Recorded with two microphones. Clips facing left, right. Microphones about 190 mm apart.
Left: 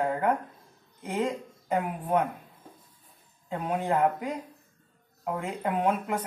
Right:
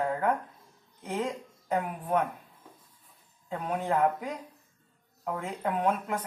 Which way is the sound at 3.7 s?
15° left (ahead or behind).